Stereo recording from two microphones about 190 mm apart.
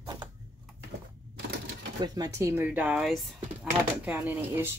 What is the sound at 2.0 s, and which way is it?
Speech, 20° right (ahead or behind).